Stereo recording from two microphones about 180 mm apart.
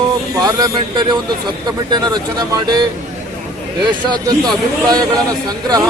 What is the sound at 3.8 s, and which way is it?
Speech, 25° right (ahead or behind).